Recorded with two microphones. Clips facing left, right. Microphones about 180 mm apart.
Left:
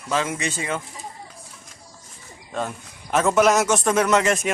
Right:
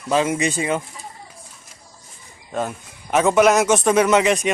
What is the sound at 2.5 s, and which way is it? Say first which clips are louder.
A man's voice: right 3 dB; 10° right (ahead or behind).